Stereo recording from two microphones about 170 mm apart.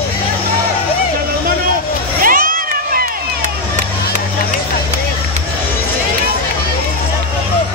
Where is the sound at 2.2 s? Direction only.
55° right (ahead or behind).